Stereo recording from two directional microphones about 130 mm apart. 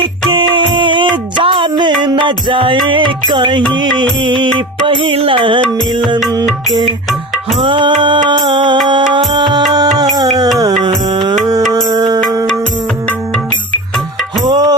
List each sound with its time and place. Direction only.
0.3 s music: 40° right (ahead or behind)
7.6 s music: 40° right (ahead or behind)
14.4 s music: 30° right (ahead or behind)